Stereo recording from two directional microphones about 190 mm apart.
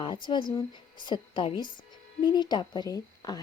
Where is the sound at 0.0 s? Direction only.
25° left (ahead or behind).